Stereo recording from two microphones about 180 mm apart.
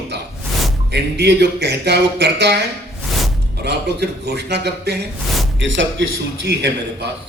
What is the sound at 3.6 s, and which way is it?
A man's voice, 65° right (ahead or behind).